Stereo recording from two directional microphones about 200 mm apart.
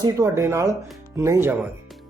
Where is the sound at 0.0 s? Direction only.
15° right (ahead or behind).